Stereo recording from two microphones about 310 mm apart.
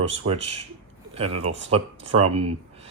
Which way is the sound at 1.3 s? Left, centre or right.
Right.